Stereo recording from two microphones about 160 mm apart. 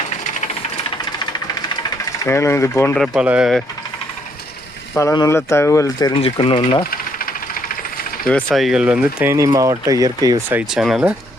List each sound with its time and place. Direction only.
2.2 s speech: 15° left (ahead or behind)
3.1 s speech: 10° right (ahead or behind)
4.9 s speech: 20° left (ahead or behind)
6.1 s speech: 35° left (ahead or behind)
8.3 s speech: 5° left (ahead or behind)
9.3 s speech: 20° right (ahead or behind)
10.5 s speech: 5° right (ahead or behind)